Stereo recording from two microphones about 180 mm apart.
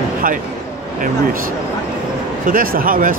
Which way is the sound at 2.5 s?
50° right (ahead or behind).